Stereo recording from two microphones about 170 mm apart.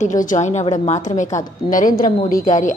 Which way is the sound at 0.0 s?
50° left (ahead or behind).